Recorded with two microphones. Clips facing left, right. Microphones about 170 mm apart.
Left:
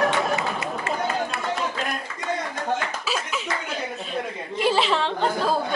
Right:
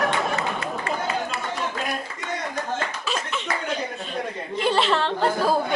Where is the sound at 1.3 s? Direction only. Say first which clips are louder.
Even; 55° left (ahead or behind).